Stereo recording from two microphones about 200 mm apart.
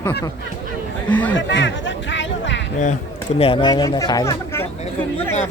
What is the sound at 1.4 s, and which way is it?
Speech, 65° left (ahead or behind).